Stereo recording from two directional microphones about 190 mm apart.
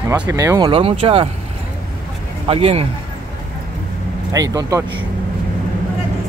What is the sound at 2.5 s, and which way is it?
Speech, 30° right (ahead or behind).